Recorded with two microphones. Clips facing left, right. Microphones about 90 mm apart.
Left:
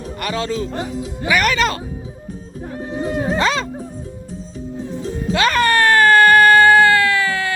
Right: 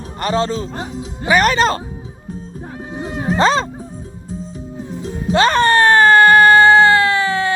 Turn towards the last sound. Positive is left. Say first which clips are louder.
# right 2 dB
turn(degrees=-30)  # may be behind; listen again after turning